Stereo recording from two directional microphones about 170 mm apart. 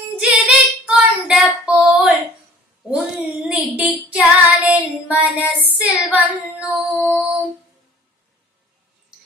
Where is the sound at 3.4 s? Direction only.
5° right (ahead or behind).